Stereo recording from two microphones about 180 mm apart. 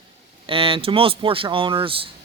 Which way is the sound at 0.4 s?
30° right (ahead or behind).